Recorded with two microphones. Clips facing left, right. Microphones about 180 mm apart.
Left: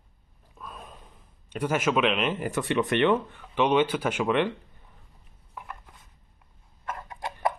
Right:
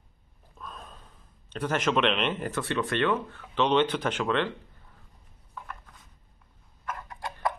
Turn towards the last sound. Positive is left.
turn(degrees=20)  # may be behind; listen again after turning